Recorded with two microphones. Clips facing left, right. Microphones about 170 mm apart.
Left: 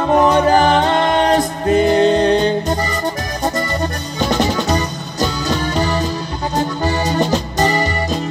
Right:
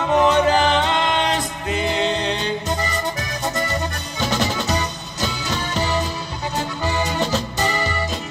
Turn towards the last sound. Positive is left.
turn(degrees=40)  # may be behind; listen again after turning